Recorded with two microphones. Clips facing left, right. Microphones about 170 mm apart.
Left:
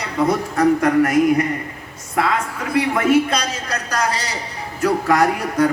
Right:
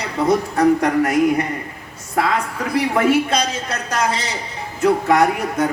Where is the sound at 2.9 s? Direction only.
30° right (ahead or behind).